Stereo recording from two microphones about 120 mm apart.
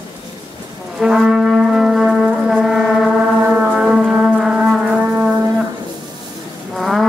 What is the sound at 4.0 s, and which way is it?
Music, 5° right (ahead or behind).